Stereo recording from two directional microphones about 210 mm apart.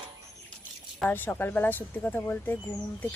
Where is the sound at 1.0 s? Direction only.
10° left (ahead or behind).